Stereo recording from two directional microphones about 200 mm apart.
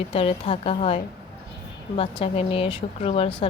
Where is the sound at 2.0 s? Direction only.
30° left (ahead or behind).